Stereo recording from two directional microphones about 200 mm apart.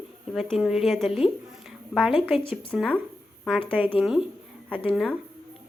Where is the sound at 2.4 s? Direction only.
25° left (ahead or behind).